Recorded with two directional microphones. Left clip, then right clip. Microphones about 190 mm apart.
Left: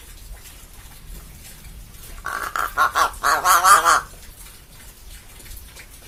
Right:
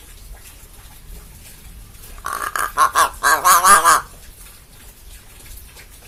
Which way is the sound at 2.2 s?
25° right (ahead or behind).